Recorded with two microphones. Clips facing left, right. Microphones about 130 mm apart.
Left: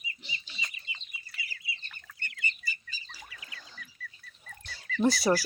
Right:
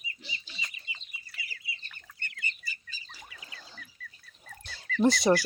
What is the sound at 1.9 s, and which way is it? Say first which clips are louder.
Bird: even; 10° left (ahead or behind).